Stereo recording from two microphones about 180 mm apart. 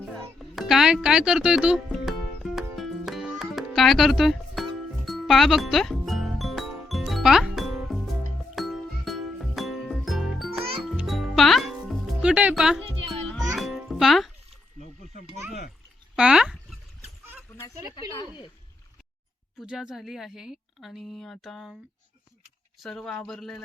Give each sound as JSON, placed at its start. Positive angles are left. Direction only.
{"t": 0.3, "sound": "music", "side_deg": 0}
{"t": 16.1, "sound": "dog", "side_deg": -5}
{"t": 18.1, "sound": "speech", "side_deg": 25}
{"t": 19.5, "sound": "a woman's voice", "side_deg": -5}
{"t": 22.8, "sound": "a woman's voice", "side_deg": 0}